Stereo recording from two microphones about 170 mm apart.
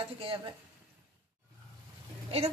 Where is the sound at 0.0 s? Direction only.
35° right (ahead or behind).